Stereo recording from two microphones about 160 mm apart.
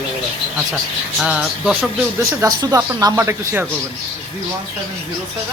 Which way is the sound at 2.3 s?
20° right (ahead or behind).